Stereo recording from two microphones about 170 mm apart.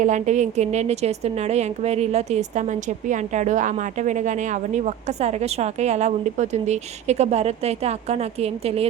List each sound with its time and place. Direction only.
0.0 s a woman's voice: 45° right (ahead or behind)